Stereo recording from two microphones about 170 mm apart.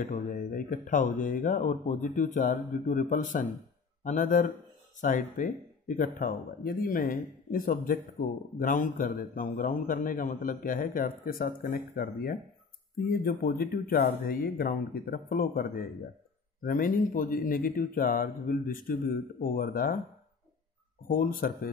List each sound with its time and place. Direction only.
0.0 s speech: 55° left (ahead or behind)
21.1 s speech: 60° left (ahead or behind)